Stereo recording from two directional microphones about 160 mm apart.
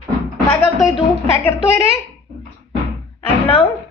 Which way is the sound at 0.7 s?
Centre (ahead or behind).